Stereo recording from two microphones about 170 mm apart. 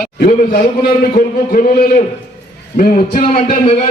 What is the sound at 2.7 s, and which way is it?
Speech, 45° left (ahead or behind).